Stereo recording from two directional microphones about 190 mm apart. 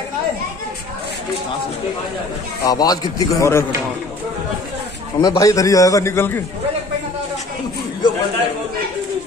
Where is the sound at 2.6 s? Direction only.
20° left (ahead or behind).